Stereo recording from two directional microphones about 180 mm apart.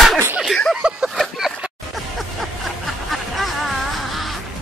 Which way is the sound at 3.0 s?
Centre (ahead or behind).